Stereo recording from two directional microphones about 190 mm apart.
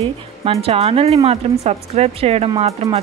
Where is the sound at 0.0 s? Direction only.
30° right (ahead or behind).